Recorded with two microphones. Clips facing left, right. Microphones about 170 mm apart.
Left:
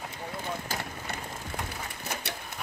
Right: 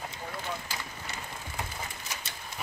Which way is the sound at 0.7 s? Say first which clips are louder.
Left 4 dB; 55° left (ahead or behind).